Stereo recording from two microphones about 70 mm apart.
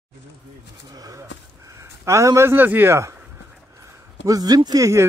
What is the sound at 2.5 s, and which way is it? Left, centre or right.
Speech, right.